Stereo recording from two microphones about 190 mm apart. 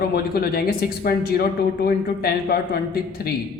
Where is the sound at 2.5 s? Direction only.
55° left (ahead or behind).